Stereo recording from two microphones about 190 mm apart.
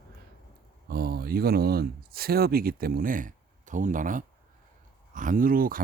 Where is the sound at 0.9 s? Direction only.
55° right (ahead or behind).